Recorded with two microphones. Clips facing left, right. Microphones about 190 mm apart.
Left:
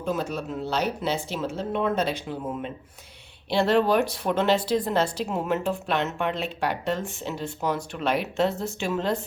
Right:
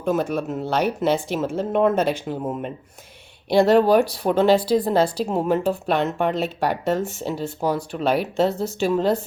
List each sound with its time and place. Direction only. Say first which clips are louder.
0.0 s speech: right 6 dB; 50° right (ahead or behind); by 9.1 s 35° right (ahead or behind)